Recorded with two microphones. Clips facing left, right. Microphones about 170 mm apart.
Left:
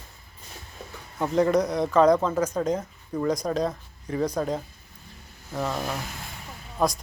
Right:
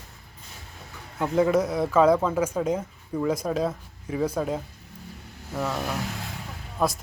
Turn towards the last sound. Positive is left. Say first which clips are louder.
# left 1 dB
turn(degrees=0)  # may be behind; listen again after turning